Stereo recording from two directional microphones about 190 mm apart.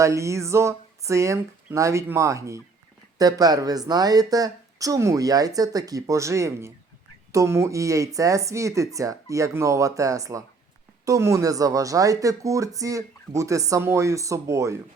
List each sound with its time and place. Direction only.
0.0 s speech: 15° right (ahead or behind)